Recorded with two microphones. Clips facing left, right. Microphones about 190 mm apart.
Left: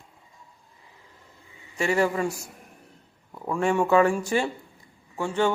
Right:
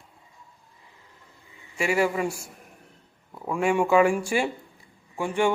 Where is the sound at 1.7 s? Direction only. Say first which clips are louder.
Even; 10° right (ahead or behind).